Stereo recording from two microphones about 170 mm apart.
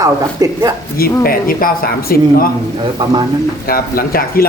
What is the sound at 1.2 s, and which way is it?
Speech, 60° left (ahead or behind).